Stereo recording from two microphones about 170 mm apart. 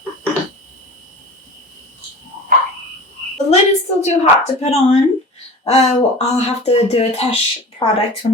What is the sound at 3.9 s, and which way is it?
Speech, 40° left (ahead or behind).